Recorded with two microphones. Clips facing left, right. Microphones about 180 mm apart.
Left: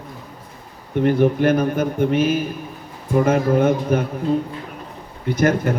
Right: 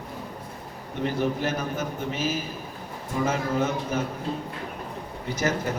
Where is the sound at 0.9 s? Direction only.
55° left (ahead or behind).